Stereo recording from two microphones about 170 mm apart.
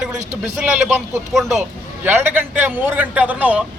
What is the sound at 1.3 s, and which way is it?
A man's voice, centre (ahead or behind).